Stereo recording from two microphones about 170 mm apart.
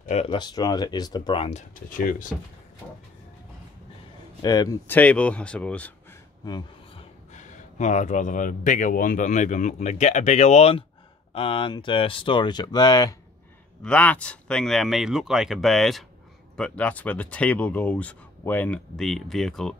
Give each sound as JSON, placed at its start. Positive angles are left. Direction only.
{"t": 0.1, "sound": "speech", "side_deg": 35}
{"t": 1.9, "sound": "speech", "side_deg": 50}
{"t": 4.4, "sound": "speech", "side_deg": 20}
{"t": 4.8, "sound": "speech", "side_deg": 10}
{"t": 7.3, "sound": "speech", "side_deg": 45}
{"t": 13.8, "sound": "speech", "side_deg": 10}